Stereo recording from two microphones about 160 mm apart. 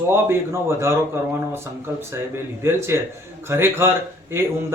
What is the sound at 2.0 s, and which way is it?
Speech, 15° right (ahead or behind).